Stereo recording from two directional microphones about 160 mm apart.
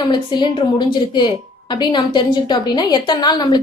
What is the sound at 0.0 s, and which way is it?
A woman's voice, 30° left (ahead or behind).